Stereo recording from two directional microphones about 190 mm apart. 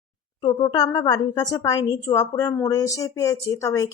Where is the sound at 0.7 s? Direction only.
20° left (ahead or behind).